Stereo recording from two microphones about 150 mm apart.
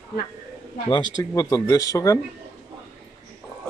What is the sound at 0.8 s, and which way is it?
Speech, 30° left (ahead or behind).